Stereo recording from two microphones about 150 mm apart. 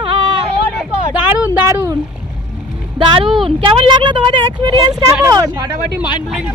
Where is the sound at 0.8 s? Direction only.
10° right (ahead or behind).